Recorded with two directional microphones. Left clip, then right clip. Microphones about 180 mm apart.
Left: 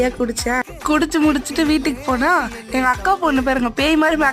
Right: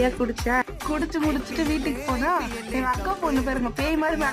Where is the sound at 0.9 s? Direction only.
40° left (ahead or behind).